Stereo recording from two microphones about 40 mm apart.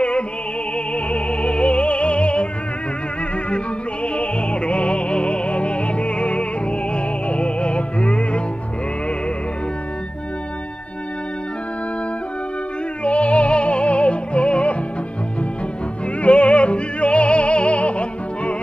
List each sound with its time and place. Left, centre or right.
0.9 s music: left
3.4 s music: left
13.0 s music: left
16.2 s music: left